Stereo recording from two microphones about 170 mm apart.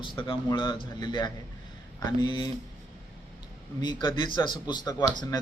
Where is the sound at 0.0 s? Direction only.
30° left (ahead or behind).